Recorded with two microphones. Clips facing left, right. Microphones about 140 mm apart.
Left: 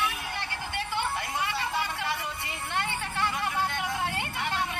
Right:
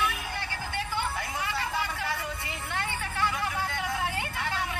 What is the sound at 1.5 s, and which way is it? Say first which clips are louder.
Vehicle: left 1 dB; 15° left (ahead or behind).